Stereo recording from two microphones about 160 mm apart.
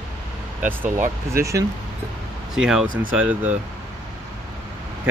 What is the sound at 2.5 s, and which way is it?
Speech, 5° right (ahead or behind).